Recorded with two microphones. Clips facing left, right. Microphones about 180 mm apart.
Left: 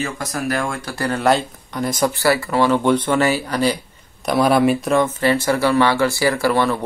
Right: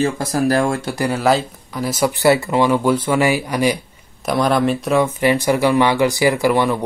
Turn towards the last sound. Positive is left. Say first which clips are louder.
# right 2 dB
turn(degrees=-15)  # may be behind; listen again after turning